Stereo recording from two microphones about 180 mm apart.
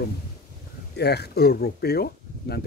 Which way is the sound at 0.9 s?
65° left (ahead or behind).